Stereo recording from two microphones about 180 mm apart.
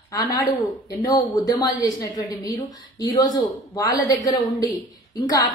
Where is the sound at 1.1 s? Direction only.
20° left (ahead or behind).